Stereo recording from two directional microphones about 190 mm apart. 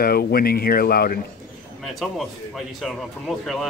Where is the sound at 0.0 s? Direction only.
55° left (ahead or behind).